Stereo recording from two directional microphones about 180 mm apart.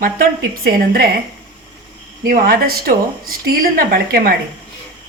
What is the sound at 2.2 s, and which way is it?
Speech, 50° right (ahead or behind).